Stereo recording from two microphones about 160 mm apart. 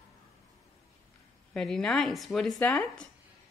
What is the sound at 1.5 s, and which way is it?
Speech, 5° left (ahead or behind).